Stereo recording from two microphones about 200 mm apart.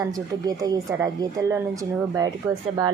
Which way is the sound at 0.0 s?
20° right (ahead or behind).